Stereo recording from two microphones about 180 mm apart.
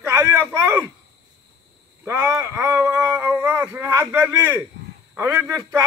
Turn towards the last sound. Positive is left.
turn(degrees=-15)  # may be behind; listen again after turning